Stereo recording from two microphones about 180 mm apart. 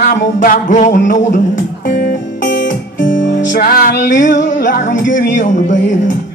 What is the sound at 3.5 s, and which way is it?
Music, 55° left (ahead or behind).